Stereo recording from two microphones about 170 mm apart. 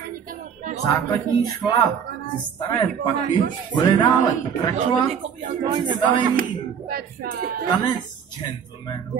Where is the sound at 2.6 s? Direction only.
25° left (ahead or behind).